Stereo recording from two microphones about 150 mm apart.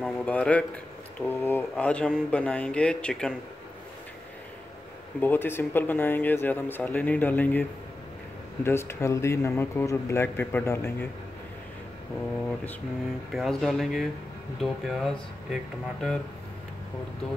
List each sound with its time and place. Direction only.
0.0 s a man's voice: 10° left (ahead or behind)
5.2 s a man's voice: 15° left (ahead or behind)
8.6 s a man's voice: 15° left (ahead or behind)
13.3 s speech: centre (ahead or behind)